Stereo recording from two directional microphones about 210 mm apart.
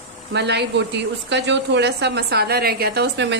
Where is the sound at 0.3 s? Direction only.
55° right (ahead or behind).